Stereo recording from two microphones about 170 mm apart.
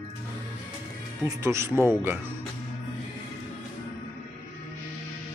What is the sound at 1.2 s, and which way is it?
Speech, 15° right (ahead or behind).